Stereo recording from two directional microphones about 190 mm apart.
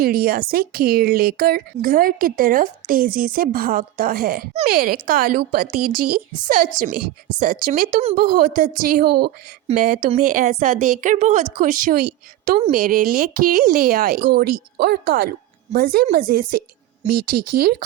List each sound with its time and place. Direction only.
0.0 s a woman's voice: 50° right (ahead or behind)